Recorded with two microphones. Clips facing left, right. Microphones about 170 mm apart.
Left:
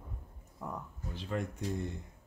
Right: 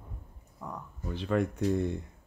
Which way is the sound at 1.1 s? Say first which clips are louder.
Right 8 dB; 75° right (ahead or behind).